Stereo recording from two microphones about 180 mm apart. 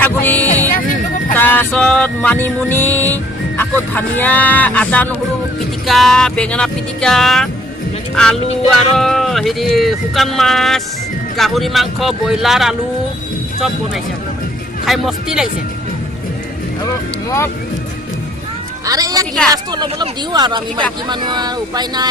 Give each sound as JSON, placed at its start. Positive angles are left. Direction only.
{"t": 0.0, "sound": "music", "side_deg": 10}
{"t": 3.6, "sound": "speech", "side_deg": 10}
{"t": 14.8, "sound": "speech", "side_deg": 0}
{"t": 18.9, "sound": "a woman's voice", "side_deg": -20}